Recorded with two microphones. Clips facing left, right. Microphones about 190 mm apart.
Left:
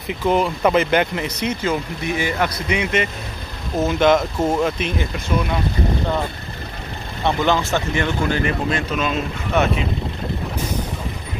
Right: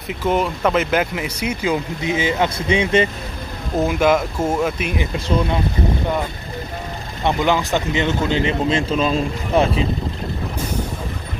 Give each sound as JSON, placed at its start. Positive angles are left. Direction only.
{"t": 0.1, "sound": "speech", "side_deg": 0}
{"t": 3.7, "sound": "speech", "side_deg": -10}
{"t": 5.1, "sound": "speech", "side_deg": -25}
{"t": 7.2, "sound": "speech", "side_deg": -15}